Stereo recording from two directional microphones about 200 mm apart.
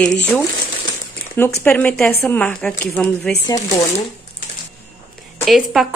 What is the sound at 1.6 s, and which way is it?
A woman's voice, 5° left (ahead or behind).